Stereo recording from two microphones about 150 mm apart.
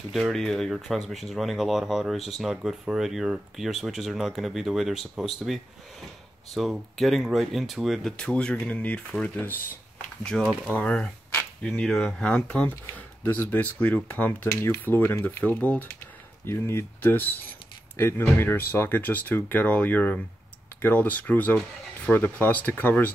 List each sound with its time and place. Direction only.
0.1 s speech: centre (ahead or behind)